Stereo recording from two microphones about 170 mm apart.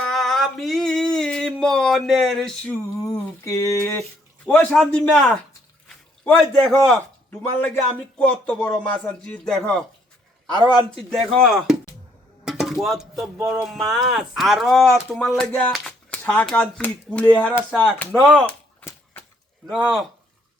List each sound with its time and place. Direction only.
0.0 s a sound: centre (ahead or behind)
3.1 s a man's voice: 20° left (ahead or behind)
8.2 s a man's voice: 5° left (ahead or behind)
10.9 s speech: centre (ahead or behind)
12.5 s a sound: centre (ahead or behind)
13.5 s speech: centre (ahead or behind)
19.6 s speech: centre (ahead or behind)